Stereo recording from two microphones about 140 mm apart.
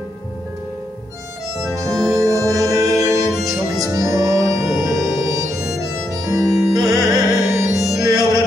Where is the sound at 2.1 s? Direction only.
25° right (ahead or behind).